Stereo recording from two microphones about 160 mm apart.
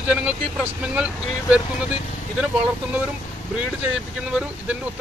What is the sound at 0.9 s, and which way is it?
Speech, 5° right (ahead or behind).